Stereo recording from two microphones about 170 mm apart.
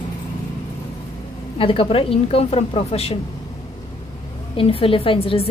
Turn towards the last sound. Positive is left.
turn(degrees=30)  # may be behind; listen again after turning